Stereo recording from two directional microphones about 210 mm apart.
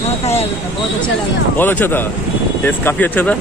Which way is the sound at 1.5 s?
10° left (ahead or behind).